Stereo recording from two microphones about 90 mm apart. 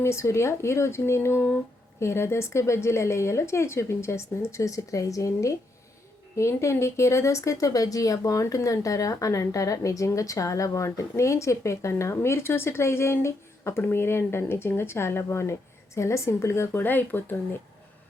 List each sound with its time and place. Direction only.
0.0 s a woman's voice: 30° left (ahead or behind)